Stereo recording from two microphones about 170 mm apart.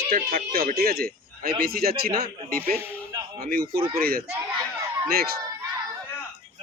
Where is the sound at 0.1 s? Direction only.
60° right (ahead or behind).